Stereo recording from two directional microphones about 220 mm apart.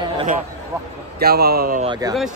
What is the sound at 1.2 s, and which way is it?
Speech, 45° right (ahead or behind).